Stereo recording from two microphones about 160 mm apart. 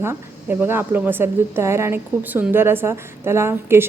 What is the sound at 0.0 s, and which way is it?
A woman's voice, 15° right (ahead or behind).